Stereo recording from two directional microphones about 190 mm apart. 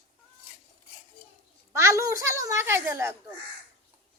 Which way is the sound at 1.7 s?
15° right (ahead or behind).